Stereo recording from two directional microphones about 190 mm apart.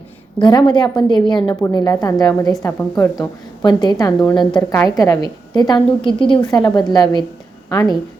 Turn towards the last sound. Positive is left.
turn(degrees=20)  # may be behind; listen again after turning